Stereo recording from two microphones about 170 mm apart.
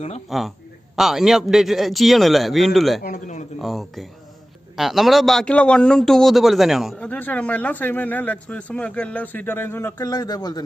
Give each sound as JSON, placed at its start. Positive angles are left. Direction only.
{"t": 0.3, "sound": "a man's voice", "side_deg": 0}
{"t": 3.0, "sound": "a man's voice", "side_deg": 50}
{"t": 3.6, "sound": "a man's voice", "side_deg": 0}